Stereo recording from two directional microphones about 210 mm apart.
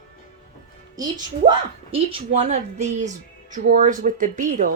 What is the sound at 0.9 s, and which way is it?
A woman's voice, 20° right (ahead or behind).